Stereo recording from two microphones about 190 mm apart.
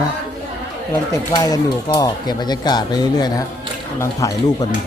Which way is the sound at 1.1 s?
15° left (ahead or behind).